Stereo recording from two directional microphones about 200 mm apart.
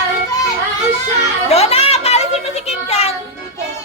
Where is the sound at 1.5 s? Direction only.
30° left (ahead or behind).